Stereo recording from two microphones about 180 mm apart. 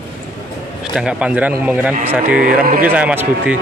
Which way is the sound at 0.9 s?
5° right (ahead or behind).